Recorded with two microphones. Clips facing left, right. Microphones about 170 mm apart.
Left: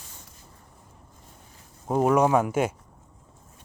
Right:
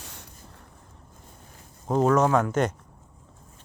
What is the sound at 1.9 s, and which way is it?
Speech, 10° left (ahead or behind).